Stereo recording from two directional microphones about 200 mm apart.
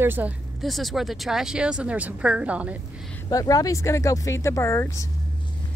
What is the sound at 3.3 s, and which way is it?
Speech, 15° left (ahead or behind).